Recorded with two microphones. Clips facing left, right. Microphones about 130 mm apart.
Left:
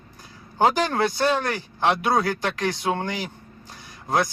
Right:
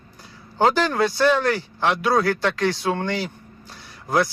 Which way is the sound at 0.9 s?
20° left (ahead or behind).